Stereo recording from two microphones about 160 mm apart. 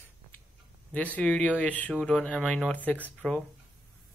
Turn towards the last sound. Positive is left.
turn(degrees=5)  # may be behind; listen again after turning